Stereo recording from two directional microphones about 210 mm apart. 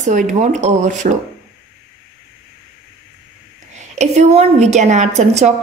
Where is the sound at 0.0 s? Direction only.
35° right (ahead or behind).